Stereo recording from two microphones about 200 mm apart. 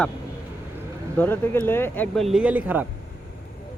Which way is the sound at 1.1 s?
10° left (ahead or behind).